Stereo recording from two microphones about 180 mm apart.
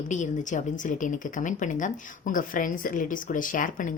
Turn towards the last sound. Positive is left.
turn(degrees=50)  # may be behind; listen again after turning